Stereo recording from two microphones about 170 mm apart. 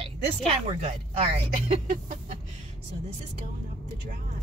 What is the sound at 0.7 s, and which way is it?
Speech, 40° right (ahead or behind).